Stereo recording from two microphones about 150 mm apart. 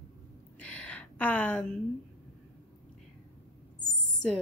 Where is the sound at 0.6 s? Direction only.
10° left (ahead or behind).